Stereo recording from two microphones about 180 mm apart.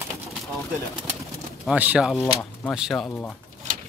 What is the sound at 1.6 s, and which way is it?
Speech, 5° right (ahead or behind).